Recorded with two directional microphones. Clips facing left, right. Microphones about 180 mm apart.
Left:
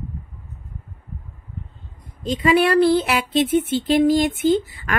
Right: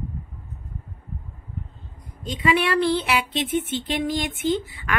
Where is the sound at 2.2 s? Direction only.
40° left (ahead or behind).